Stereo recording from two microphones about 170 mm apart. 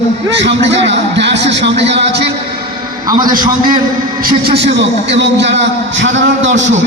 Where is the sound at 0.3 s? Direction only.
90° right.